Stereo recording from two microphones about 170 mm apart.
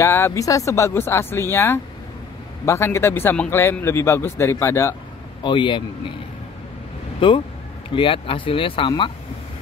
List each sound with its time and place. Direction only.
0.0 s a man's voice: 15° left (ahead or behind)
5.4 s speech: 30° left (ahead or behind)
7.2 s speech: 30° left (ahead or behind)